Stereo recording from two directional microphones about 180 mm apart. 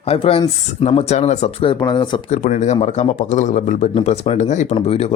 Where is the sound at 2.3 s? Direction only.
45° left (ahead or behind).